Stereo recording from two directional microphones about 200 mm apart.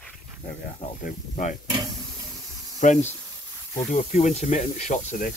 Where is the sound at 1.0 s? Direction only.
40° left (ahead or behind).